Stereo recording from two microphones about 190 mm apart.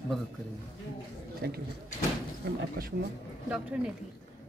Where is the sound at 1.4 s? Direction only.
55° right (ahead or behind).